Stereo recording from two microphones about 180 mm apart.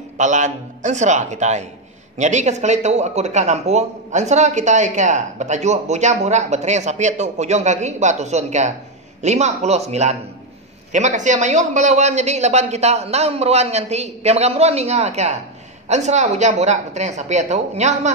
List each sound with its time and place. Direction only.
0.2 s speech: 40° right (ahead or behind)